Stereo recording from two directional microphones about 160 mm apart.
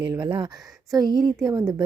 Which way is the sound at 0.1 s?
30° right (ahead or behind).